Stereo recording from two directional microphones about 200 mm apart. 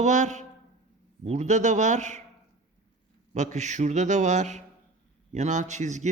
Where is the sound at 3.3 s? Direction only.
35° right (ahead or behind).